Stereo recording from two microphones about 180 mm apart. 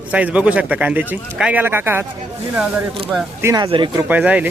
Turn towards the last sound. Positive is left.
turn(degrees=-10)  # may be behind; listen again after turning